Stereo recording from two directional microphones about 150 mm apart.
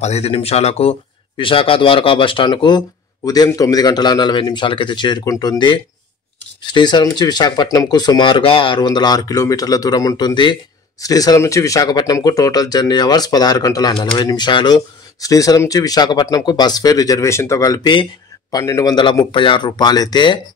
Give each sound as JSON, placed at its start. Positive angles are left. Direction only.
{"t": 0.0, "sound": "speech", "side_deg": 45}